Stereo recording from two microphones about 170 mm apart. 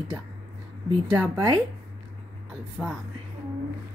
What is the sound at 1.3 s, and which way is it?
Speech, 20° right (ahead or behind).